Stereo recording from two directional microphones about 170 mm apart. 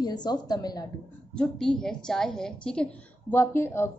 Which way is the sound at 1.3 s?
5° left (ahead or behind).